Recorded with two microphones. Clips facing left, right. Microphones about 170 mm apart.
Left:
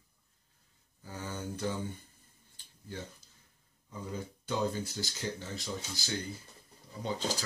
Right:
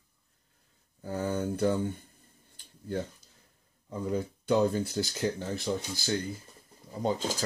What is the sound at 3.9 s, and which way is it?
Speech, 55° right (ahead or behind).